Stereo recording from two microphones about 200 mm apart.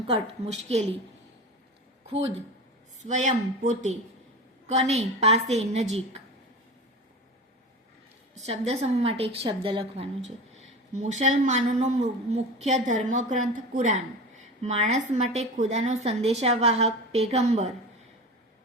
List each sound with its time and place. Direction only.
0.1 s a woman's voice: 30° right (ahead or behind)
2.0 s a woman's voice: 30° right (ahead or behind)
4.7 s a woman's voice: 35° right (ahead or behind)
8.4 s a woman's voice: 30° right (ahead or behind)